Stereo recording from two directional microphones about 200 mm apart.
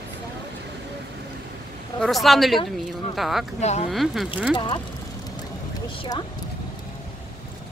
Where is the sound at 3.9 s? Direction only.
Centre (ahead or behind).